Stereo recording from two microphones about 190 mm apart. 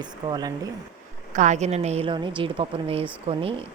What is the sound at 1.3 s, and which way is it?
A woman's voice, 40° right (ahead or behind).